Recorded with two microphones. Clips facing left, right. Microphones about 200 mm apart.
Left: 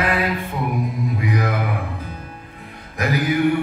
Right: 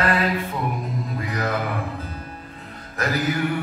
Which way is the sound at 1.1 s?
15° left (ahead or behind).